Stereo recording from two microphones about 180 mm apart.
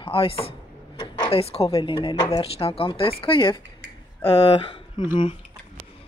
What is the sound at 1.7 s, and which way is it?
Speech, 25° left (ahead or behind).